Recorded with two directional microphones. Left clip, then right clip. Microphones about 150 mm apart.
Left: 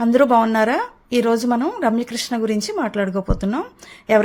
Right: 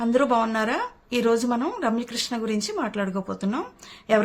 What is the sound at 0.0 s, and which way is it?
A woman's voice, 40° left (ahead or behind).